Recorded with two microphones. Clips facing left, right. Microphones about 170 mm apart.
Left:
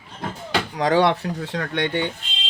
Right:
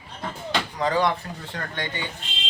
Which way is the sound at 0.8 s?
75° left (ahead or behind).